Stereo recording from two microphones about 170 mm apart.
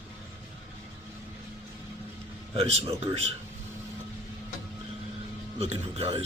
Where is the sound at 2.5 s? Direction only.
40° right (ahead or behind).